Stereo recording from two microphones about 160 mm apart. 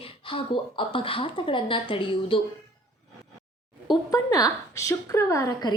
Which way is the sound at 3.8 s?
25° left (ahead or behind).